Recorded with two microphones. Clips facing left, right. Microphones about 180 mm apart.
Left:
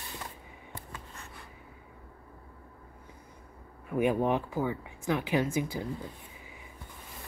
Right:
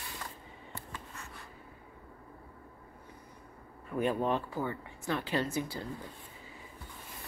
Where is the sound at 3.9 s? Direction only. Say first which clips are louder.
Left 4 dB; 15° left (ahead or behind).